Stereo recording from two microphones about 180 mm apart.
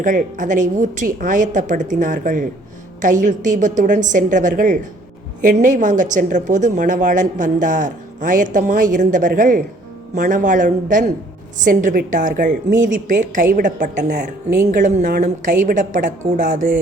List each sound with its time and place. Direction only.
0.0 s a woman's voice: 45° right (ahead or behind)